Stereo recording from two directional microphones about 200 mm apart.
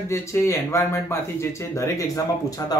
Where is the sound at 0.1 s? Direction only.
15° left (ahead or behind).